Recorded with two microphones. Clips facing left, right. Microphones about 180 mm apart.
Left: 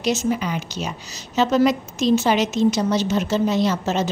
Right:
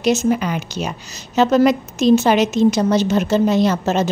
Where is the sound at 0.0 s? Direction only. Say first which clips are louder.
Right 5 dB; 55° right (ahead or behind).